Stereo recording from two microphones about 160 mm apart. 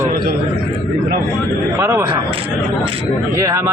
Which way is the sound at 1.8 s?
15° right (ahead or behind).